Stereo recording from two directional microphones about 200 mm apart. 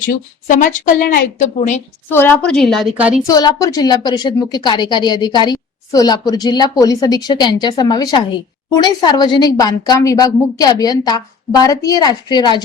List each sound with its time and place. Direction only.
0.1 s a woman's voice: 40° left (ahead or behind)
2.0 s a woman's voice: 10° left (ahead or behind); by 3.2 s 5° right (ahead or behind)
3.2 s a woman's voice: 15° left (ahead or behind)